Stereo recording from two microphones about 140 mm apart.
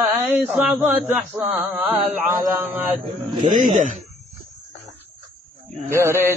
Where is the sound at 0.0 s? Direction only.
10° right (ahead or behind).